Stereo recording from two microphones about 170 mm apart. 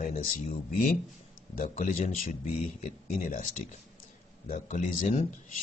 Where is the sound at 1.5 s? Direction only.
50° left (ahead or behind).